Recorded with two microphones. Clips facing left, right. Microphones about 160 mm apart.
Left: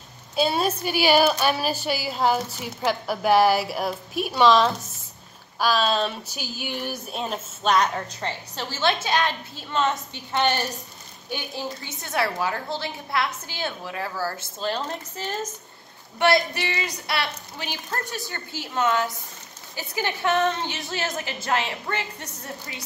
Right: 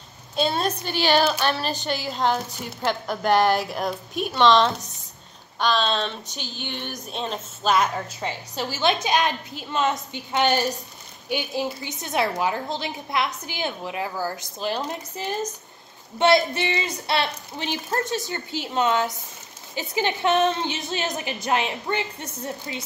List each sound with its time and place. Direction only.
0.4 s a woman's voice: 5° left (ahead or behind); by 22.8 s 20° right (ahead or behind)